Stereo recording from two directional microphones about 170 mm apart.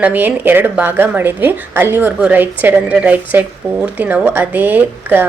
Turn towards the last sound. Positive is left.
turn(degrees=-10)  # may be behind; listen again after turning